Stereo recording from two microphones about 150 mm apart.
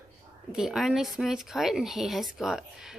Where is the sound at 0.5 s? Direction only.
5° right (ahead or behind).